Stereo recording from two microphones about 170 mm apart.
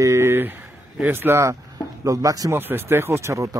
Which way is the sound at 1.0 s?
15° right (ahead or behind).